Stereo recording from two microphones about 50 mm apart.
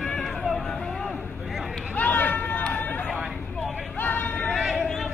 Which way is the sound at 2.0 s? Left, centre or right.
Left.